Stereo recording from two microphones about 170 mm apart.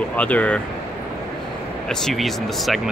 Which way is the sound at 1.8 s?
Centre (ahead or behind).